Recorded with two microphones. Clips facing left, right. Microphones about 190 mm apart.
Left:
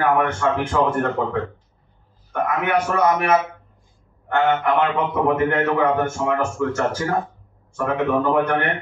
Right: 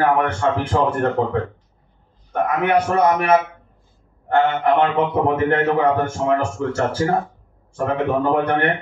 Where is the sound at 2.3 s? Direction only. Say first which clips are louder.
Right 3 dB; 35° right (ahead or behind).